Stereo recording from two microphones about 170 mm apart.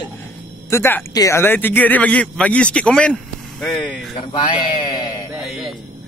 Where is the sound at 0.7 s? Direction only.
15° left (ahead or behind).